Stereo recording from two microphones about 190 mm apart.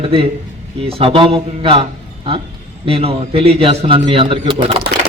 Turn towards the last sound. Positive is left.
turn(degrees=-30)  # may be behind; listen again after turning